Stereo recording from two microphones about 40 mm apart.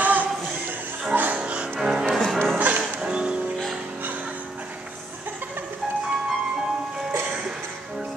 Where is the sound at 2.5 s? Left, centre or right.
Right.